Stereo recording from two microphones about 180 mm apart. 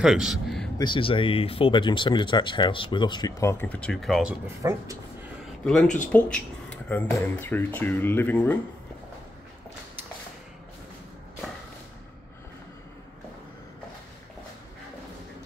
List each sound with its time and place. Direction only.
0.0 s speech: centre (ahead or behind)
0.7 s speech: 30° left (ahead or behind); by 4.4 s centre (ahead or behind)
4.6 s speech: 15° right (ahead or behind)
6.1 s speech: 5° left (ahead or behind)